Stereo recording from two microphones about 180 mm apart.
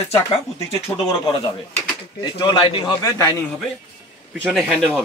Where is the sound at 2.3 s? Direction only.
25° left (ahead or behind).